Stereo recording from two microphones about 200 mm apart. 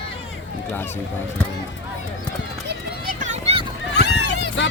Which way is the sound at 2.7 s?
40° right (ahead or behind).